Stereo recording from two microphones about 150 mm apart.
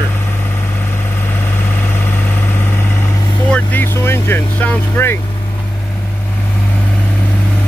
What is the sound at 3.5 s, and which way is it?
Vehicle, 15° left (ahead or behind).